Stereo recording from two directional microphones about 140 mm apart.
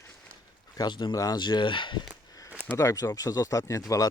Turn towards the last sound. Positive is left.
turn(degrees=25)  # may be behind; listen again after turning